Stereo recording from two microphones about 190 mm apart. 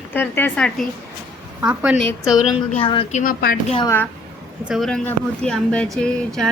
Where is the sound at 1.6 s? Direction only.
5° right (ahead or behind).